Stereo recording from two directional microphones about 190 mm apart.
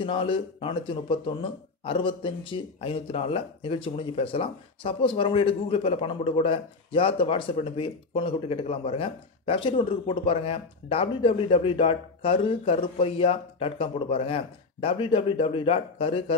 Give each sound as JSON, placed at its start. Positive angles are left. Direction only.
{"t": 0.0, "sound": "a man's voice", "side_deg": 25}